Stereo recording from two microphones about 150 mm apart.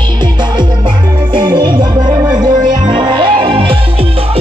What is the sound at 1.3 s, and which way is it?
Music, 30° right (ahead or behind).